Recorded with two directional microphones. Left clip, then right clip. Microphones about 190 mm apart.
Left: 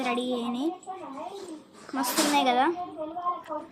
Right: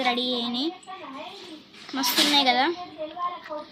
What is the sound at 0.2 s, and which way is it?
Speech, 40° left (ahead or behind).